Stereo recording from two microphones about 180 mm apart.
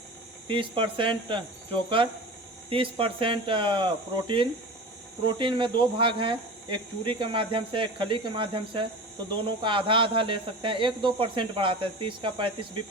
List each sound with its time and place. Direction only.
0.4 s speech: 30° right (ahead or behind)
2.6 s speech: 30° right (ahead or behind)